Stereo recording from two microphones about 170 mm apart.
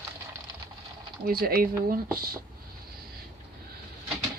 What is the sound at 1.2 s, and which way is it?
Speech, 60° right (ahead or behind).